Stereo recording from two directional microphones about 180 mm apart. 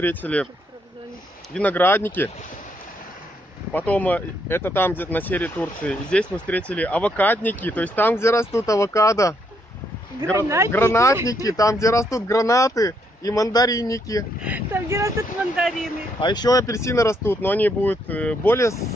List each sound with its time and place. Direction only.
0.0 s speech: 10° left (ahead or behind)
1.5 s speech: 10° left (ahead or behind)
3.7 s speech: 10° left (ahead or behind)
10.3 s speech: 15° right (ahead or behind)
10.7 s speech: 15° left (ahead or behind)
14.4 s speech: 10° right (ahead or behind)
16.2 s speech: 25° left (ahead or behind)